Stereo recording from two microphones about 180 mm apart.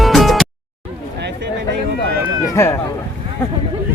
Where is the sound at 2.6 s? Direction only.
15° left (ahead or behind).